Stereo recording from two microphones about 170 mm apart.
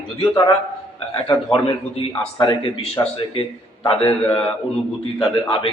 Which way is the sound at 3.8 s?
30° left (ahead or behind).